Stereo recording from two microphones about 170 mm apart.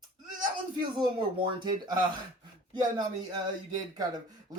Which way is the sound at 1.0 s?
25° right (ahead or behind).